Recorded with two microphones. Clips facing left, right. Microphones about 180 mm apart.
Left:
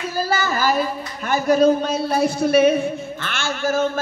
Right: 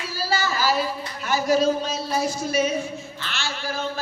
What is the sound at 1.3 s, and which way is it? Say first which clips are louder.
Female singing: left 5 dB; 55° left (ahead or behind).